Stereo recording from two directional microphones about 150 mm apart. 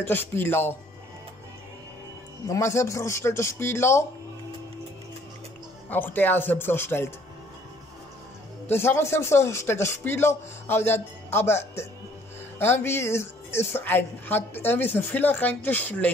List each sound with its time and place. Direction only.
0.0 s speech: 15° left (ahead or behind)
2.4 s speech: 20° left (ahead or behind)
5.9 s speech: 10° left (ahead or behind)
8.6 s speech: 15° left (ahead or behind)